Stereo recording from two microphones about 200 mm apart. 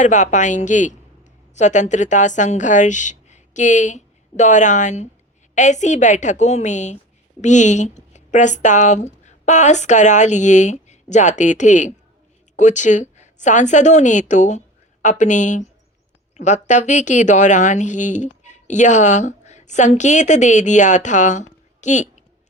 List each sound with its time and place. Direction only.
0.0 s a woman's voice: 35° left (ahead or behind)